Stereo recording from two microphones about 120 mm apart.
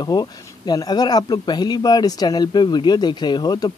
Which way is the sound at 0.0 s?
35° left (ahead or behind).